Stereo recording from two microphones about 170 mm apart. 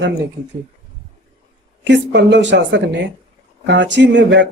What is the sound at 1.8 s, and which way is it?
Speech, 90° right.